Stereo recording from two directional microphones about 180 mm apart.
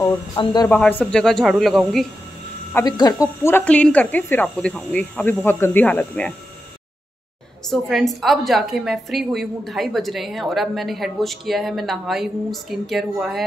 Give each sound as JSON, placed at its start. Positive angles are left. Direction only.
{"t": 0.4, "sound": "speech", "side_deg": 25}
{"t": 0.7, "sound": "a woman's voice", "side_deg": 10}
{"t": 2.7, "sound": "speech", "side_deg": 20}
{"t": 7.7, "sound": "a woman's voice", "side_deg": 0}